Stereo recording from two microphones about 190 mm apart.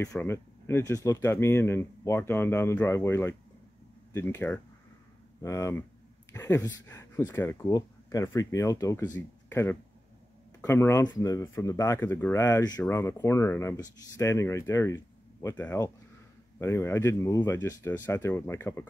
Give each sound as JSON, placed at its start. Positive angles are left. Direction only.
{"t": 0.0, "sound": "speech", "side_deg": 15}